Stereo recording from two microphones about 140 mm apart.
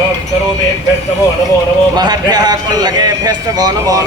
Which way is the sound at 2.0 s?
30° right (ahead or behind).